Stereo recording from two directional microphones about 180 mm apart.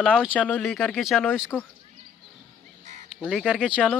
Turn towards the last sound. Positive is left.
turn(degrees=5)  # may be behind; listen again after turning